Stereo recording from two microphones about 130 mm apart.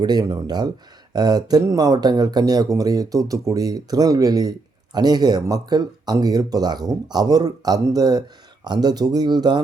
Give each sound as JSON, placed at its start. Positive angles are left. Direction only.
{"t": 0.0, "sound": "speech", "side_deg": -30}